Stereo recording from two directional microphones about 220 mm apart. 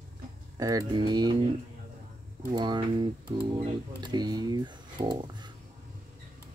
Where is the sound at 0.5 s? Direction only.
15° right (ahead or behind).